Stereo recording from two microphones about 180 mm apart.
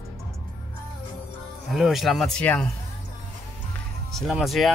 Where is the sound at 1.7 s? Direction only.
Centre (ahead or behind).